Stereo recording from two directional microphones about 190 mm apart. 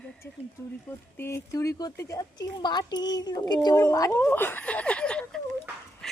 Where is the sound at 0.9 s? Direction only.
15° left (ahead or behind).